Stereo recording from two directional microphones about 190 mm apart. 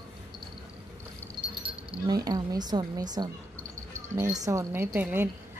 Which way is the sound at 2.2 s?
20° right (ahead or behind).